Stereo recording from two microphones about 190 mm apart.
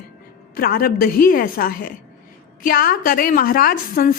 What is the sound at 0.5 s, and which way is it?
A woman's voice, 50° left (ahead or behind).